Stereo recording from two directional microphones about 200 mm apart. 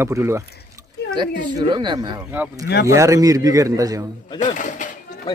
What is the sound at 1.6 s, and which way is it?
Speech, 25° right (ahead or behind).